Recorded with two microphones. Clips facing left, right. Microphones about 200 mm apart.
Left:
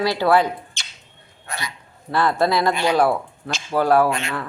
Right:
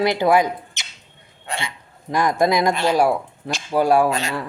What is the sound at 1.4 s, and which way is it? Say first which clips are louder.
Hiccup: right 3 dB; 25° right (ahead or behind).